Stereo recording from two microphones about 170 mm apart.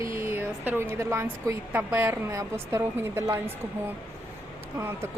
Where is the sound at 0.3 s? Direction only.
10° right (ahead or behind).